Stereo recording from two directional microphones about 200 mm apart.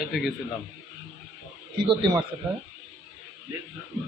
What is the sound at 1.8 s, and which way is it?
Speech, 25° right (ahead or behind).